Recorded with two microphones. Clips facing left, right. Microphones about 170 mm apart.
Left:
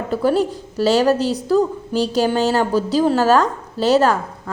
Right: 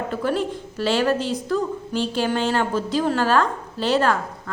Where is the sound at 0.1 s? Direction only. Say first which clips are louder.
Left 9 dB; 35° left (ahead or behind).